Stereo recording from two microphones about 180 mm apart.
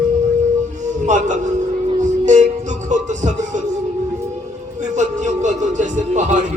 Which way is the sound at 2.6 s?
40° right (ahead or behind).